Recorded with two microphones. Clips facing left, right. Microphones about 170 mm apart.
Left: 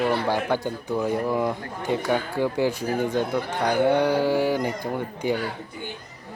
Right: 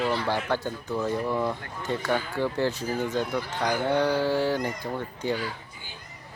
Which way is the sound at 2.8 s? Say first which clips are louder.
Left 4 dB; 55° left (ahead or behind).